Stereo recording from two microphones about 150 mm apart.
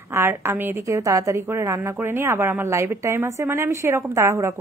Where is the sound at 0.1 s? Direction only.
20° right (ahead or behind).